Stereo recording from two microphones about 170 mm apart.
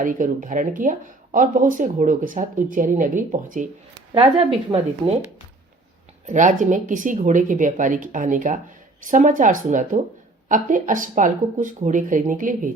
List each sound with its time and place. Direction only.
0.0 s speech: 55° right (ahead or behind)
4.1 s a woman's voice: 35° right (ahead or behind)
6.2 s speech: 45° right (ahead or behind)